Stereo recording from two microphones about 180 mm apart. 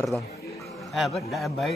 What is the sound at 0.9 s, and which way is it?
Speech, centre (ahead or behind).